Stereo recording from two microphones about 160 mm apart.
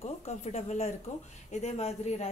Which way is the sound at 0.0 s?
40° left (ahead or behind).